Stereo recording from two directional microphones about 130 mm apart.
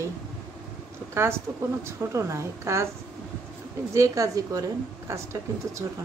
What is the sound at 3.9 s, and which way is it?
A woman's voice, 25° right (ahead or behind).